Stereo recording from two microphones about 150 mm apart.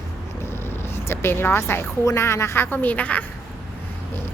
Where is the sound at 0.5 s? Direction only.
15° left (ahead or behind).